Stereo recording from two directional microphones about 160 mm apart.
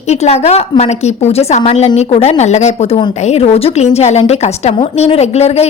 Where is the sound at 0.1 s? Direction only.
40° left (ahead or behind).